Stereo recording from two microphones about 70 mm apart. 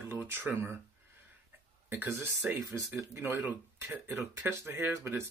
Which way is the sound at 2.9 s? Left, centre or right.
Right.